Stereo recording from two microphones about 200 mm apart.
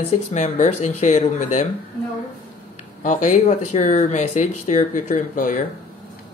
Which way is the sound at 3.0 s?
40° left (ahead or behind).